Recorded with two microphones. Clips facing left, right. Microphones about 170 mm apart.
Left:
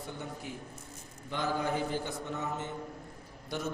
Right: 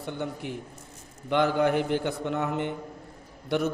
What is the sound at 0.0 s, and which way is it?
A man's voice, 70° right (ahead or behind).